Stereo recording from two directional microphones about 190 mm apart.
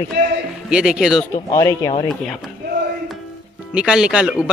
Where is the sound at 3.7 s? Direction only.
5° right (ahead or behind).